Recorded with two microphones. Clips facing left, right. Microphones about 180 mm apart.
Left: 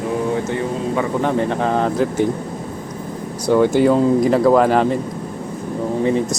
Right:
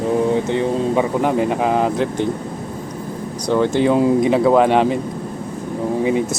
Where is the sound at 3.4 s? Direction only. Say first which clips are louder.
Left 2 dB; 5° left (ahead or behind).